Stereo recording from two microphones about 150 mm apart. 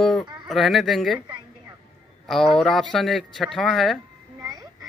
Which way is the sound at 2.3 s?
5° left (ahead or behind).